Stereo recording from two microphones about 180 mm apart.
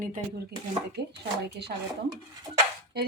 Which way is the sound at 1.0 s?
65° right (ahead or behind).